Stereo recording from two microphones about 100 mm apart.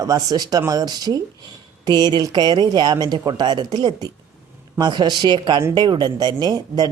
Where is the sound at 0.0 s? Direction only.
40° right (ahead or behind).